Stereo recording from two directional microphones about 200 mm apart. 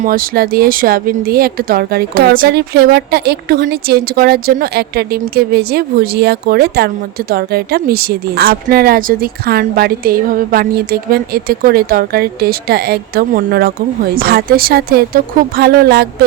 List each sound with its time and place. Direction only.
0.0 s speech: 45° right (ahead or behind)